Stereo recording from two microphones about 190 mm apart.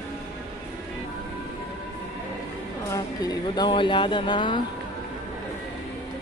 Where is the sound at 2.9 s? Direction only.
20° left (ahead or behind).